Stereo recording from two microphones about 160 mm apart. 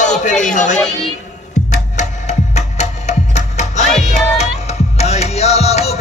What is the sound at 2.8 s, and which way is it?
Music, 45° left (ahead or behind).